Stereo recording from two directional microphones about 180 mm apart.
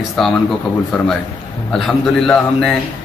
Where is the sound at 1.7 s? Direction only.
Centre (ahead or behind).